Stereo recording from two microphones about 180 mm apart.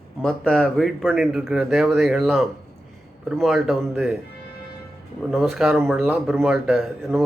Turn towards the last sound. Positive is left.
turn(degrees=0)  # may be behind; listen again after turning